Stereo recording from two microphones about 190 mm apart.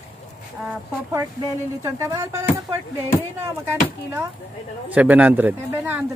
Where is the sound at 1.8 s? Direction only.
15° right (ahead or behind).